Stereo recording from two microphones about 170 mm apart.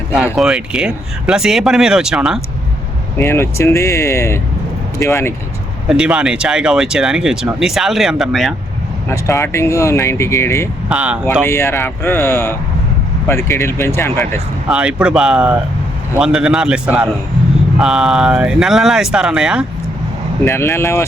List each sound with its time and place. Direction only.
0.3 s speech: 5° right (ahead or behind)
3.2 s speech: 15° left (ahead or behind)
5.9 s speech: 5° right (ahead or behind)
9.0 s speech: 15° left (ahead or behind)
10.8 s speech: 5° right (ahead or behind)
11.4 s speech: 15° left (ahead or behind)
14.7 s speech: 5° right (ahead or behind)
20.4 s speech: 15° left (ahead or behind)